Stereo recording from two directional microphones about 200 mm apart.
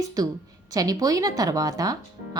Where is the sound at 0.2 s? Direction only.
20° right (ahead or behind).